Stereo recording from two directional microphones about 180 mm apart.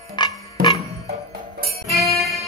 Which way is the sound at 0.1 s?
25° left (ahead or behind).